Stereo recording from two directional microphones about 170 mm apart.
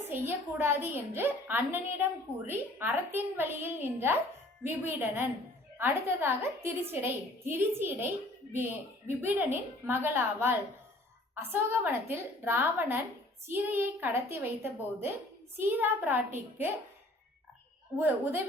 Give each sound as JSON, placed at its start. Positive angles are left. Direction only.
{"t": 0.1, "sound": "a woman's voice", "side_deg": -15}
{"t": 17.9, "sound": "a woman's voice", "side_deg": -10}